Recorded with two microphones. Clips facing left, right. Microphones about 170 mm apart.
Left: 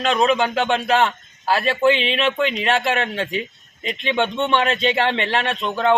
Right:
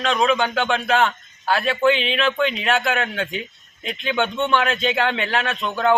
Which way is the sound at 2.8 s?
30° left (ahead or behind).